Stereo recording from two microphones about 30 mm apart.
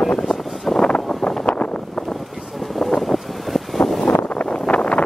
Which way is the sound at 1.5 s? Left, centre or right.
Left.